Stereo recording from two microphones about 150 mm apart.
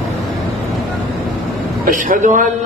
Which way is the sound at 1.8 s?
65° right (ahead or behind).